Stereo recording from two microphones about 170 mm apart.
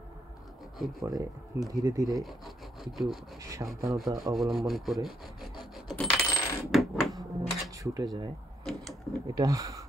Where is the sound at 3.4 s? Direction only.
20° right (ahead or behind).